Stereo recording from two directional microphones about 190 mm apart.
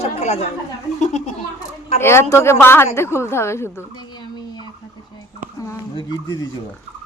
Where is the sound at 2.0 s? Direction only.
15° left (ahead or behind).